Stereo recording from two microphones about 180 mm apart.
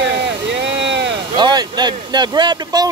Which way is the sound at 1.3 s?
25° right (ahead or behind).